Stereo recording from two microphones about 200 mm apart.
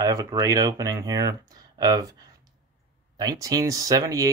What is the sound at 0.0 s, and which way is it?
Speech, 15° right (ahead or behind).